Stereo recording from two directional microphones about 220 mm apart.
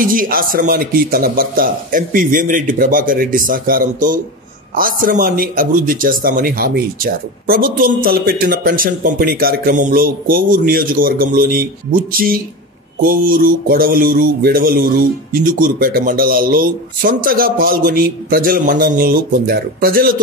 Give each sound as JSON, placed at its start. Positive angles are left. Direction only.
{"t": 0.0, "sound": "speech", "side_deg": -40}